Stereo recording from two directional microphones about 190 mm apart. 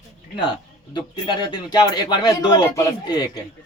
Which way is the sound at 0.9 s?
25° left (ahead or behind).